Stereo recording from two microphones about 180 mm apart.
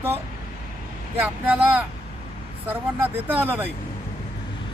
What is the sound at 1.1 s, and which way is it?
Speech, 10° right (ahead or behind).